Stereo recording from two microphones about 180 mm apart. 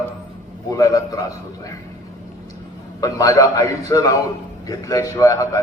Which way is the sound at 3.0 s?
20° left (ahead or behind).